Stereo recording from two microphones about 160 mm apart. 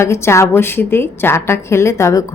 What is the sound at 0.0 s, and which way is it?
A woman's voice, 15° left (ahead or behind).